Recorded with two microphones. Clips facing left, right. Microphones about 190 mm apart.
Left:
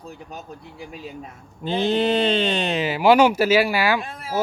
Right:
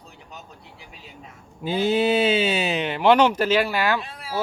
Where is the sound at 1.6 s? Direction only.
10° right (ahead or behind); by 4.0 s 10° left (ahead or behind).